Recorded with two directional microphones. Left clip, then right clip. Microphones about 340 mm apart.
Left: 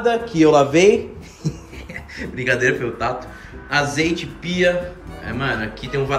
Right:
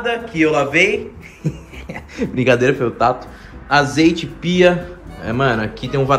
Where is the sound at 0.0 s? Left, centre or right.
Centre.